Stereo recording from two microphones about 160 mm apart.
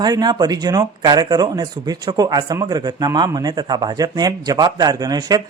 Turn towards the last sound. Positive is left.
turn(degrees=-25)  # may be behind; listen again after turning